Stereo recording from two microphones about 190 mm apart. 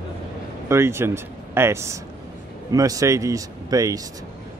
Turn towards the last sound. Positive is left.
turn(degrees=-20)  # may be behind; listen again after turning